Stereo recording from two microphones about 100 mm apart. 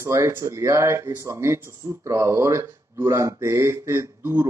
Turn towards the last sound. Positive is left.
turn(degrees=-25)  # may be behind; listen again after turning